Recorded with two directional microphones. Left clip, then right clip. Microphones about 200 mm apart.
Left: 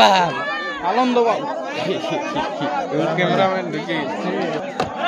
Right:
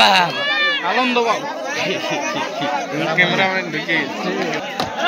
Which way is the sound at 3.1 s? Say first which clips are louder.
Right 4 dB; 15° left (ahead or behind).